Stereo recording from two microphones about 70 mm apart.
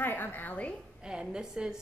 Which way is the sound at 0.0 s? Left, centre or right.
Left.